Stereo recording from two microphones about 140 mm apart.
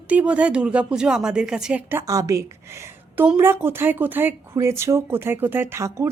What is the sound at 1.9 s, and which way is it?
A woman's voice, 25° right (ahead or behind).